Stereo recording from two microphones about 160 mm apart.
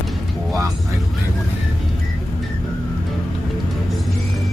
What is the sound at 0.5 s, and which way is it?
Vehicle, 20° right (ahead or behind).